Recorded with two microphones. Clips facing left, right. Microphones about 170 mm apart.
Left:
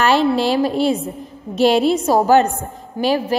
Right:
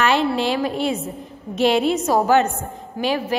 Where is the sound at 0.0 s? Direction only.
35° left (ahead or behind).